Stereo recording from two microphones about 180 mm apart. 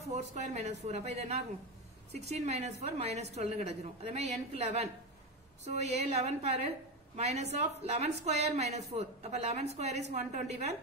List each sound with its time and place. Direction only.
0.3 s a woman's voice: 40° right (ahead or behind)